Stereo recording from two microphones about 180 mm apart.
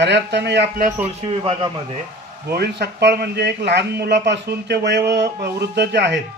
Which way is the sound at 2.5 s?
65° right (ahead or behind).